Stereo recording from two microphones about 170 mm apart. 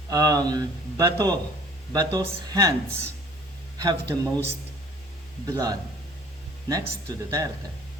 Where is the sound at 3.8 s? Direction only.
20° right (ahead or behind).